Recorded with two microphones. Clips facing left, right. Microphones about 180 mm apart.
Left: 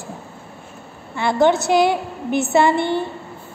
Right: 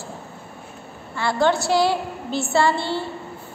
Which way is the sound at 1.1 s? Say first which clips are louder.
Left 4 dB; 20° left (ahead or behind).